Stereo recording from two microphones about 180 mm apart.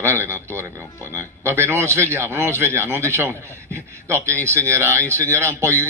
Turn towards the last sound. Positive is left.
turn(degrees=-15)  # may be behind; listen again after turning